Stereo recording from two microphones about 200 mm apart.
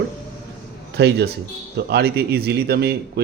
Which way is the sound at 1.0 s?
55° right (ahead or behind).